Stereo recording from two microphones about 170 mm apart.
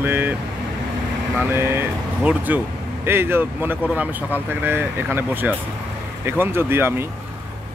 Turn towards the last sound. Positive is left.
turn(degrees=-15)  # may be behind; listen again after turning